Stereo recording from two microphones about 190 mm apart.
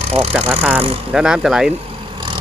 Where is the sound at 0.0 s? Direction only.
35° right (ahead or behind).